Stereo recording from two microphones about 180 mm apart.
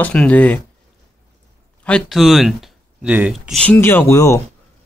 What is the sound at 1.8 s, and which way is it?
Speech, 5° left (ahead or behind).